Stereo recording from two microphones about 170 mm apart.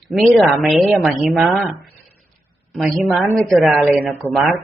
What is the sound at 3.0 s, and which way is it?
A woman's voice, centre (ahead or behind).